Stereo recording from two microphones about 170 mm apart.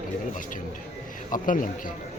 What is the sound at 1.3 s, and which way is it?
Speech, 50° left (ahead or behind).